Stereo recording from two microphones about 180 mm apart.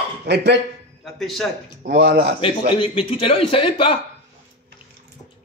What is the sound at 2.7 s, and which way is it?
Speech, 30° left (ahead or behind).